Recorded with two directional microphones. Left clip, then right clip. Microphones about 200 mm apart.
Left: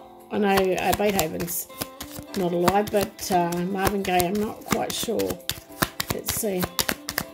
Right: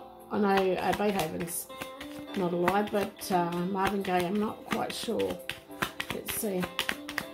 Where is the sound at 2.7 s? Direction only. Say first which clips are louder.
Left 6 dB; 30° left (ahead or behind).